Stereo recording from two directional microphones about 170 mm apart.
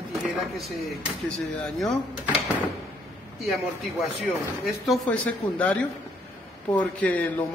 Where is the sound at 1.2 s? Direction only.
5° left (ahead or behind).